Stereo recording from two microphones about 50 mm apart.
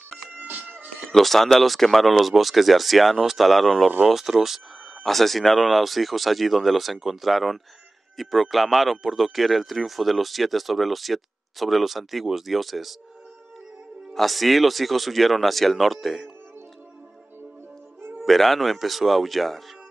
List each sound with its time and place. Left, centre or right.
0.3 s music: right
1.2 s speech: centre
5.0 s speech: centre
14.1 s speech: centre
18.1 s speech: centre